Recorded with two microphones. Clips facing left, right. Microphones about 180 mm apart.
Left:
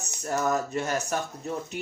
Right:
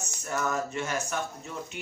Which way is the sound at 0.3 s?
40° left (ahead or behind).